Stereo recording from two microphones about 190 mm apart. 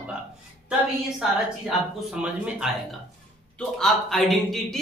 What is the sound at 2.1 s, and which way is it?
A man's voice, 5° right (ahead or behind).